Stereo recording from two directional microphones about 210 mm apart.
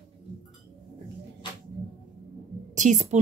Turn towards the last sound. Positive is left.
turn(degrees=-35)  # may be behind; listen again after turning